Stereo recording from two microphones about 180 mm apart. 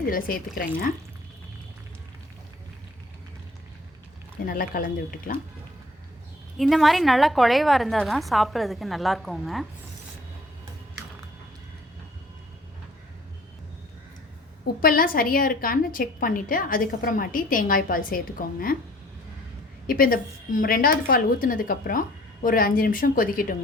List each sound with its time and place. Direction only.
0.1 s a woman's voice: 50° left (ahead or behind)
4.4 s a woman's voice: 55° left (ahead or behind)
6.6 s a woman's voice: centre (ahead or behind)
14.8 s a woman's voice: 50° left (ahead or behind)
19.9 s a woman's voice: 50° left (ahead or behind)